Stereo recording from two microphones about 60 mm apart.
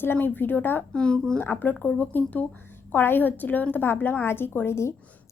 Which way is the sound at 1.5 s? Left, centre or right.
Left.